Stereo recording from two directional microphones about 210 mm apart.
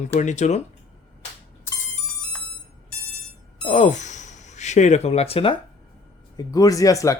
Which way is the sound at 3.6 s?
35° left (ahead or behind).